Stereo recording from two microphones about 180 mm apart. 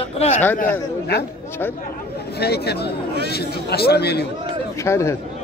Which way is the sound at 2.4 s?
65° left (ahead or behind).